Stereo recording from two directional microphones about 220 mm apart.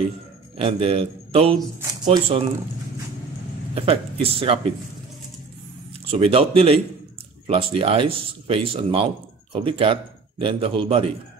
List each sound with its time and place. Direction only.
0.6 s speech: 25° right (ahead or behind)
3.7 s speech: 25° right (ahead or behind)
6.0 s speech: 25° right (ahead or behind)